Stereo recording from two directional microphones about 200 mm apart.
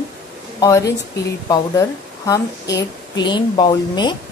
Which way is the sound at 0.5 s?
15° left (ahead or behind).